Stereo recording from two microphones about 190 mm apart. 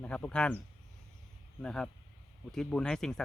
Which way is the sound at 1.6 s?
5° left (ahead or behind).